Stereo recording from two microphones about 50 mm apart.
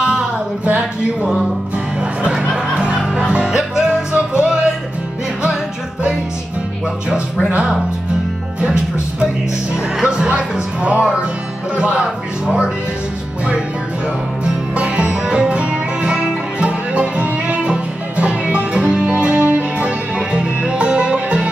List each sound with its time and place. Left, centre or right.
0.0 s a sound: centre
1.2 s music: centre
2.8 s music: centre
10.0 s speech: centre
14.4 s music: right